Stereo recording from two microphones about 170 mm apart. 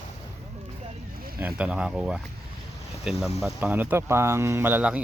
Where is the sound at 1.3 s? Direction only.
10° right (ahead or behind).